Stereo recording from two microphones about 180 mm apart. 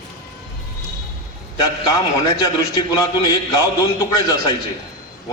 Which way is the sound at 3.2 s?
20° left (ahead or behind).